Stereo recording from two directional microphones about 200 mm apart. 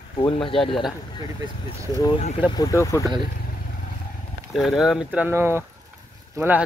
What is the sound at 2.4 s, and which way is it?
Speech, 20° left (ahead or behind).